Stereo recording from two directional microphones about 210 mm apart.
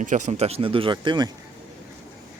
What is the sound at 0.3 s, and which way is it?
Speech, 30° right (ahead or behind).